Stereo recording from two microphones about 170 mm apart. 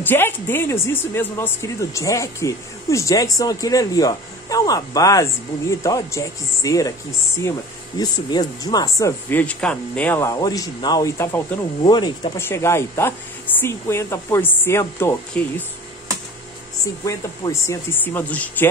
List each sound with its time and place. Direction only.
0.0 s speech: 10° left (ahead or behind)
8.0 s speech: 25° left (ahead or behind)
10.3 s speech: 20° left (ahead or behind)
11.8 s speech: 25° left (ahead or behind)
12.4 s speech: 15° left (ahead or behind)
17.0 s speech: 20° left (ahead or behind)